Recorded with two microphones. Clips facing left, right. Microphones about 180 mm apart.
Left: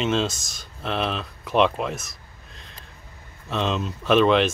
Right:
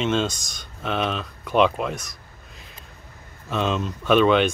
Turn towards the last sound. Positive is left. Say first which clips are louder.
# right 1 dB
turn(degrees=0)  # may be behind; listen again after turning